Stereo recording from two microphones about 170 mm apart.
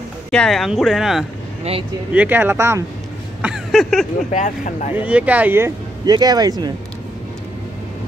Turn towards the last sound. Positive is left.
turn(degrees=-25)  # may be behind; listen again after turning